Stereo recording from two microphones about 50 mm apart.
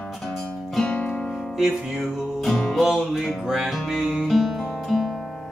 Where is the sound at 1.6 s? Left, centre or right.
Centre.